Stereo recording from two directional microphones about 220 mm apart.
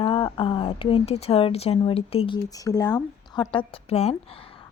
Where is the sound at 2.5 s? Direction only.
15° left (ahead or behind).